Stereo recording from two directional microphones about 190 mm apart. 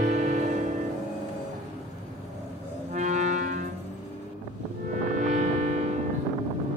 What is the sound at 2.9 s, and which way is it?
Music, 40° right (ahead or behind).